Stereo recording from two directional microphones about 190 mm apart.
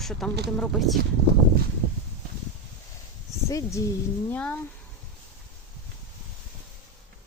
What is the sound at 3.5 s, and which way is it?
Speech, 15° left (ahead or behind).